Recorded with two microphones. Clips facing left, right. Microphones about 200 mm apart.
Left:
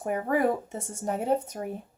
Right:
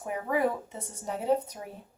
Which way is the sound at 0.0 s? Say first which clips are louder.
Left 3 dB; 50° left (ahead or behind).